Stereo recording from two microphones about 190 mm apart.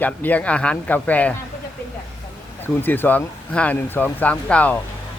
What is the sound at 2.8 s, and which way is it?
A man's voice, 10° left (ahead or behind).